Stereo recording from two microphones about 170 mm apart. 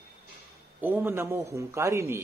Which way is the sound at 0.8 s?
10° right (ahead or behind).